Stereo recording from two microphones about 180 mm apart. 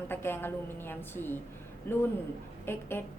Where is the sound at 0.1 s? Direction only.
10° left (ahead or behind).